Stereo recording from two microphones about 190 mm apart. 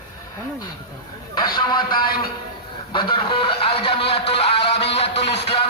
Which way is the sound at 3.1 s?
30° left (ahead or behind).